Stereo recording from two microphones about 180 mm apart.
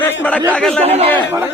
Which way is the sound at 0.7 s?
35° right (ahead or behind).